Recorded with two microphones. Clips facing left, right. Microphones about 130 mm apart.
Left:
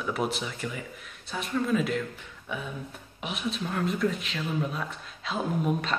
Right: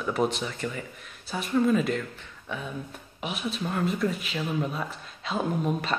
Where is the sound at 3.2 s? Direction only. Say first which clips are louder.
Right 1 dB; centre (ahead or behind).